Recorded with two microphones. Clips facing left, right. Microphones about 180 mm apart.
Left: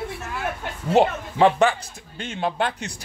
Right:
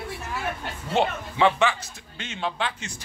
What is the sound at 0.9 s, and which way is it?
A man's voice, 40° left (ahead or behind).